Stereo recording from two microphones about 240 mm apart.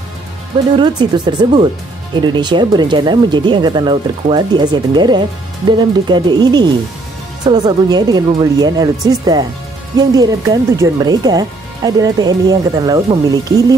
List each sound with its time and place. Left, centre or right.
0.7 s speech: centre